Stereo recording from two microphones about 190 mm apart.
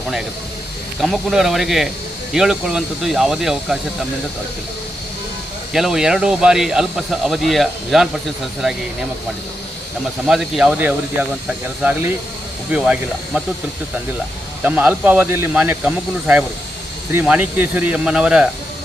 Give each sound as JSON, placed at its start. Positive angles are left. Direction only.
{"t": 0.9, "sound": "speech", "side_deg": 0}
{"t": 5.7, "sound": "speech", "side_deg": 0}
{"t": 10.2, "sound": "speech", "side_deg": 0}
{"t": 14.6, "sound": "speech", "side_deg": -10}